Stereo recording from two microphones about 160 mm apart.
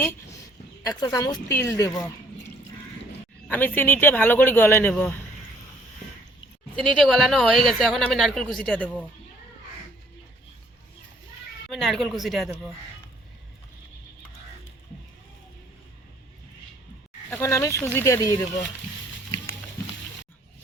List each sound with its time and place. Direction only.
0.9 s speech: 20° left (ahead or behind)
3.5 s speech: 10° left (ahead or behind)
6.7 s speech: 5° left (ahead or behind)
11.7 s speech: centre (ahead or behind)
17.3 s speech: 15° left (ahead or behind)